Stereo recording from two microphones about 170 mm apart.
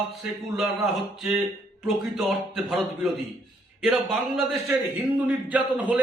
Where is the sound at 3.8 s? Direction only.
Centre (ahead or behind).